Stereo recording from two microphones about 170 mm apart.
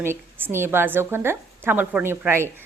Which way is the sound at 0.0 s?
15° right (ahead or behind).